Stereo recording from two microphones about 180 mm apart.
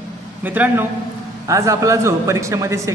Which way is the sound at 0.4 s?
10° right (ahead or behind).